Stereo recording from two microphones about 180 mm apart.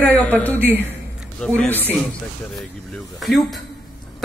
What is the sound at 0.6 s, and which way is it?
Speech, 10° right (ahead or behind).